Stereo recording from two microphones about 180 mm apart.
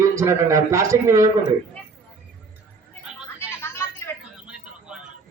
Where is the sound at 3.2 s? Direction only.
15° left (ahead or behind).